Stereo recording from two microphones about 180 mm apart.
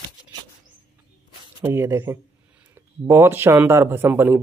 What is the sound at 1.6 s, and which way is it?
Speech, 15° right (ahead or behind).